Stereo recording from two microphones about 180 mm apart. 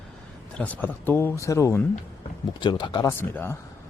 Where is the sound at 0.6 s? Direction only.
10° left (ahead or behind).